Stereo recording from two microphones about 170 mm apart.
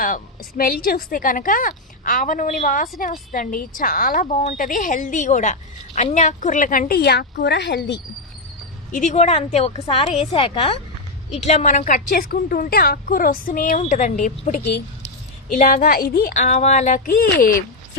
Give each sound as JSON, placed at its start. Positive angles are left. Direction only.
{"t": 0.0, "sound": "a woman's voice", "side_deg": 55}
{"t": 8.9, "sound": "a woman's voice", "side_deg": 45}
{"t": 15.5, "sound": "speech", "side_deg": 50}